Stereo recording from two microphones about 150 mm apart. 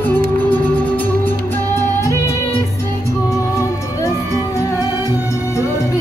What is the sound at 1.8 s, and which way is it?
Music, 15° left (ahead or behind).